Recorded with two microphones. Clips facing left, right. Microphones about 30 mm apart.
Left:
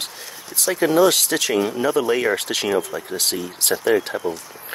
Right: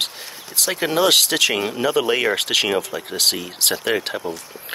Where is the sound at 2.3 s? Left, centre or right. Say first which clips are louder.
Right 3 dB; right.